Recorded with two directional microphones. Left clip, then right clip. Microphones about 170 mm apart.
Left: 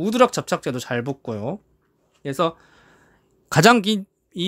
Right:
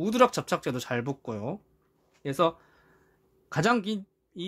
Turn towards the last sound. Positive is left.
turn(degrees=45)  # may be behind; listen again after turning